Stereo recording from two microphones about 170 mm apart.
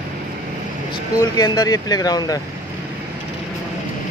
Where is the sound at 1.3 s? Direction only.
20° left (ahead or behind).